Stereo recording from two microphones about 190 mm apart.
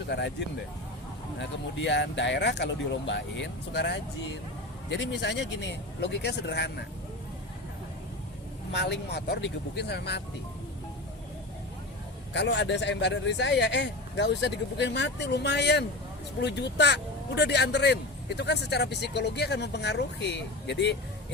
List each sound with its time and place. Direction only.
0.1 s speech: 65° left (ahead or behind)
8.7 s speech: 65° left (ahead or behind)
12.3 s speech: 70° left (ahead or behind)